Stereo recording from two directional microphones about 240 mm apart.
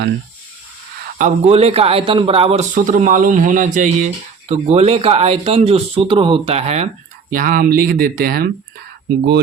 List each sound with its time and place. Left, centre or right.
1.2 s a man's voice: right